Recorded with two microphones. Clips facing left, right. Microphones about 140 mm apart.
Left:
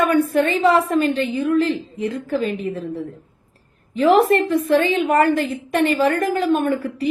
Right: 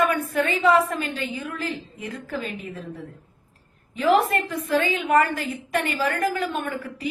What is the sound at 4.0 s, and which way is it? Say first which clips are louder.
A woman's voice: left 6 dB; 30° left (ahead or behind).